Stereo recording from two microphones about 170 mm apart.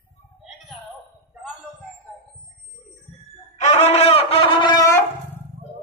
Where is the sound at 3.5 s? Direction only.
40° left (ahead or behind); by 5.4 s 15° left (ahead or behind).